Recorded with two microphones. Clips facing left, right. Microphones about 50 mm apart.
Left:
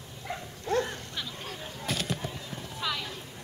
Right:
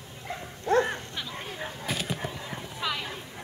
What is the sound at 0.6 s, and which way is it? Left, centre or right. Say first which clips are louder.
Dog: right 5 dB; right.